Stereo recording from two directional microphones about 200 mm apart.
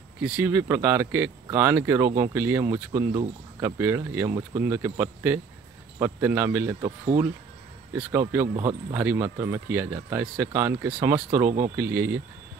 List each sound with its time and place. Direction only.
0.2 s speech: 10° right (ahead or behind)
7.9 s speech: 10° right (ahead or behind)
11.4 s speech: 35° right (ahead or behind)
11.7 s speech: 10° right (ahead or behind)